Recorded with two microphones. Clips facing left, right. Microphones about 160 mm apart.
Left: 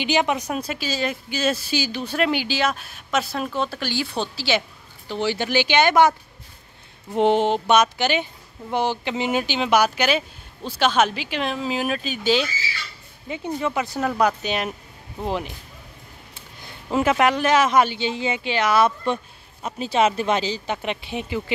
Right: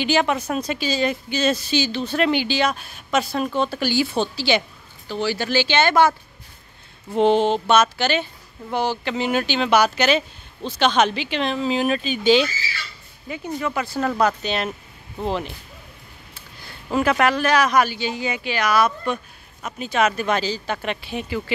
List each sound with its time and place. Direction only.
0.0 s speech: 15° left (ahead or behind)
5.0 s speech: 20° left (ahead or behind); by 12.4 s centre (ahead or behind)
13.3 s a woman's voice: 25° left (ahead or behind)